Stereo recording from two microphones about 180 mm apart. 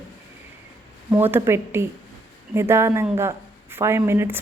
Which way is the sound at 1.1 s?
10° right (ahead or behind).